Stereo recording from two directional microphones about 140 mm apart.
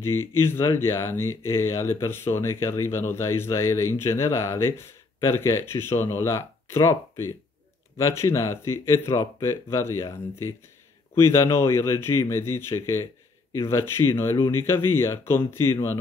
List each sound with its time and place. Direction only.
0.0 s speech: 15° left (ahead or behind)